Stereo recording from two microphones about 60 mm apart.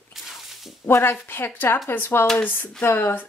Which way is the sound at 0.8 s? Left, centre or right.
Left.